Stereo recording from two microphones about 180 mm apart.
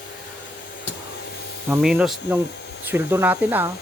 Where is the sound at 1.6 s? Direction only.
5° right (ahead or behind).